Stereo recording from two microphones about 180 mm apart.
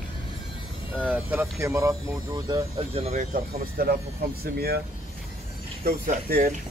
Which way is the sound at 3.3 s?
55° right (ahead or behind).